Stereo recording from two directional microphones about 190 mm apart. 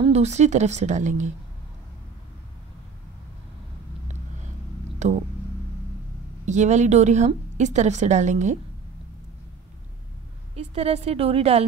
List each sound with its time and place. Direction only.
0.0 s a woman's voice: 35° right (ahead or behind)
4.9 s a sound: 40° right (ahead or behind)
6.4 s a woman's voice: 40° right (ahead or behind)
10.5 s a woman's voice: 35° right (ahead or behind)